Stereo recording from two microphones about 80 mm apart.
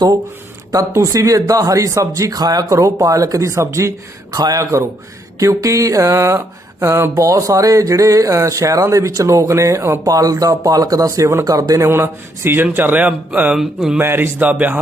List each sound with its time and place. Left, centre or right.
0.7 s speech: right
4.3 s a man's voice: right
4.6 s speech: right
10.0 s speech: right
11.9 s speech: right
13.6 s speech: centre
14.0 s speech: right